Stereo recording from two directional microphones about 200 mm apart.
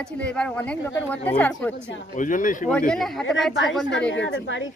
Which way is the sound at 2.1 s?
40° left (ahead or behind).